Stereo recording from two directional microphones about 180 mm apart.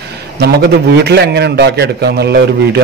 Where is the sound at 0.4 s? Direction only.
65° right (ahead or behind).